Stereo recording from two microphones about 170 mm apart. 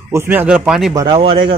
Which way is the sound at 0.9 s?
25° right (ahead or behind).